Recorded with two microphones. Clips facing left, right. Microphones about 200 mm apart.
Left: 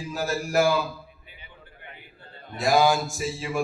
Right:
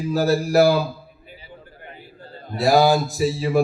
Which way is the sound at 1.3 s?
35° right (ahead or behind).